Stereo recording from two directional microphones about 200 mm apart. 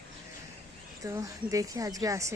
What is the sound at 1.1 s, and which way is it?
Speech, 15° right (ahead or behind).